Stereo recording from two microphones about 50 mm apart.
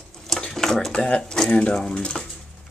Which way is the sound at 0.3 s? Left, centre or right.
Centre.